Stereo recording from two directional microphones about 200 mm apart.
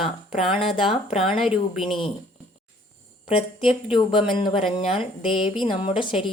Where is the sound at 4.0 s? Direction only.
25° left (ahead or behind).